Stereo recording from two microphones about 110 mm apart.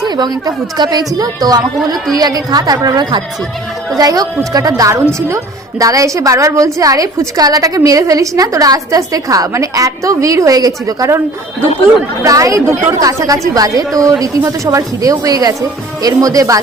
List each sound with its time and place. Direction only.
0.0 s a woman's voice: 40° right (ahead or behind)
12.2 s a woman's voice: 30° right (ahead or behind)